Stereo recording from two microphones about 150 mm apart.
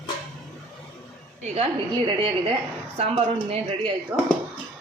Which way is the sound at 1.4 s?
45° right (ahead or behind).